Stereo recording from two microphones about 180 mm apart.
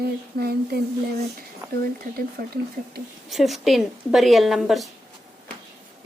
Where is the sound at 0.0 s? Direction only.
60° right (ahead or behind).